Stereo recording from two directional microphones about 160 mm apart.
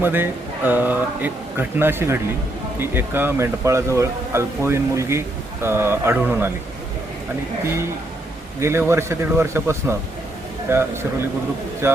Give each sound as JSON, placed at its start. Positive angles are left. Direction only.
{"t": 0.0, "sound": "a man's voice", "side_deg": -15}
{"t": 7.6, "sound": "a man's voice", "side_deg": -15}
{"t": 8.9, "sound": "a man's voice", "side_deg": -15}